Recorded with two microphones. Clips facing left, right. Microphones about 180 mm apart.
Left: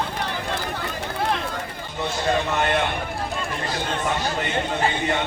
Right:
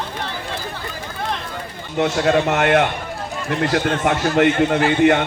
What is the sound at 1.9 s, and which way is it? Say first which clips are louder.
A man's voice: right 7 dB; 70° right (ahead or behind).